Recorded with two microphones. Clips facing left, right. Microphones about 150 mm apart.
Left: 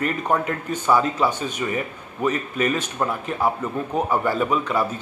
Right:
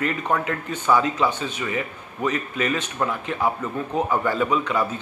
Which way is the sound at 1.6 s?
25° left (ahead or behind).